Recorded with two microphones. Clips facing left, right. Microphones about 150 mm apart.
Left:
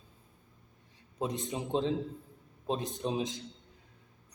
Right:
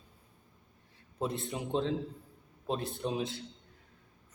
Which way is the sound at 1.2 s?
15° left (ahead or behind).